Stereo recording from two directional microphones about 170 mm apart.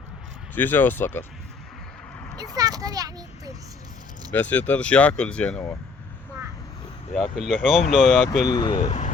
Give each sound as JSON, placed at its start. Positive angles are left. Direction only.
{"t": 0.5, "sound": "speech", "side_deg": 10}
{"t": 2.4, "sound": "a child's voice", "side_deg": -20}
{"t": 4.3, "sound": "speech", "side_deg": 10}
{"t": 7.1, "sound": "speech", "side_deg": 0}
{"t": 8.4, "sound": "speech", "side_deg": 25}
{"t": 8.9, "sound": "speech", "side_deg": 45}